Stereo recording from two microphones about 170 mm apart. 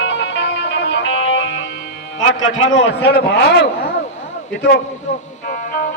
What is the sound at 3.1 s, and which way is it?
Speech, 75° left (ahead or behind).